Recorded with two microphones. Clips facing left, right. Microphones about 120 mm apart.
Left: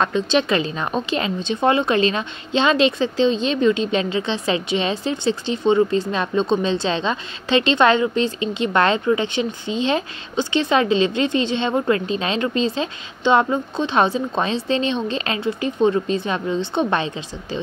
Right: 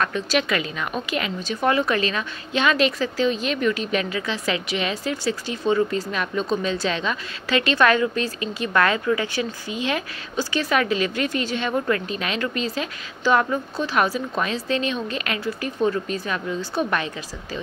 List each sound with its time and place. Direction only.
0.0 s speech: 25° left (ahead or behind)